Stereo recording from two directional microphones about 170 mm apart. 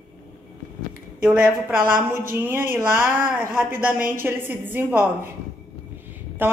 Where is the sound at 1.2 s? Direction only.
5° right (ahead or behind).